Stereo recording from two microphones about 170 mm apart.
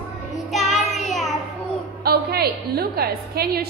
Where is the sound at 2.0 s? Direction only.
65° right (ahead or behind).